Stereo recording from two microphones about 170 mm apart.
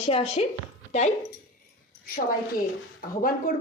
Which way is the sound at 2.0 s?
60° left (ahead or behind).